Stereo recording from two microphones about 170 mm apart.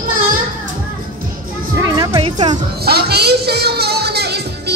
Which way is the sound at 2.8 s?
70° right (ahead or behind).